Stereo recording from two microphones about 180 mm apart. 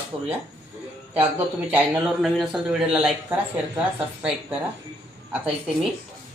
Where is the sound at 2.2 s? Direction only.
Centre (ahead or behind).